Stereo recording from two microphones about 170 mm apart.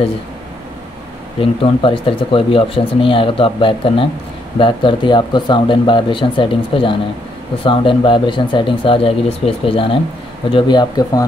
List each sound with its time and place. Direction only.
1.4 s speech: 30° left (ahead or behind)